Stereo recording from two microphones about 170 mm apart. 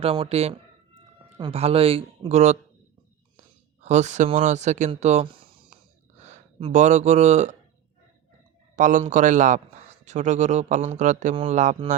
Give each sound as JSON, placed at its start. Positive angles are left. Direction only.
{"t": 0.0, "sound": "speech", "side_deg": -35}
{"t": 4.9, "sound": "a sound", "side_deg": -40}
{"t": 6.6, "sound": "speech", "side_deg": -40}
{"t": 8.7, "sound": "speech", "side_deg": -50}